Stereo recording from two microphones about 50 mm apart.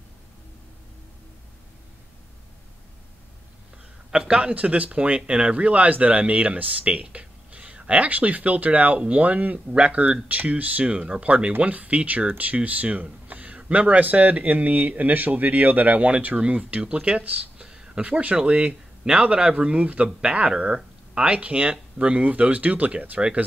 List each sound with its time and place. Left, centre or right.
4.1 s speech: centre
17.2 s speech: right
17.6 s a sound: centre
18.0 s speech: right